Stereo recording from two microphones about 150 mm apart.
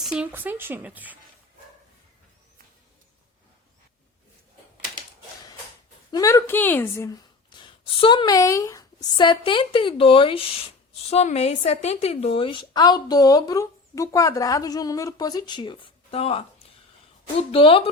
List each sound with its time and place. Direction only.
0.0 s speech: 5° right (ahead or behind)
6.1 s a woman's voice: 25° left (ahead or behind)
7.1 s a woman's voice: 30° left (ahead or behind)
17.5 s a woman's voice: 35° left (ahead or behind)